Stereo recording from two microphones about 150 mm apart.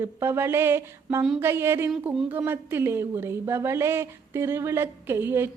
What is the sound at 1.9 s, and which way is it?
Speech, centre (ahead or behind).